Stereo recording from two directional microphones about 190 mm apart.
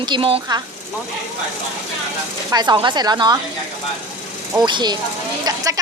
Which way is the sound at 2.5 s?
20° right (ahead or behind).